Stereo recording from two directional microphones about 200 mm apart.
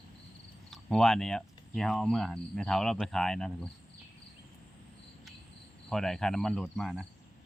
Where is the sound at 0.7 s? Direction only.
Centre (ahead or behind).